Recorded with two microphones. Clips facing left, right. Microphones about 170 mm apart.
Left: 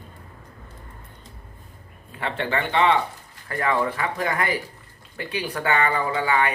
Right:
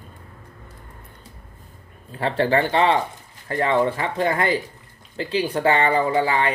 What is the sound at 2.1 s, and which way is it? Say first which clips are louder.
Speech: right 6 dB; 35° right (ahead or behind).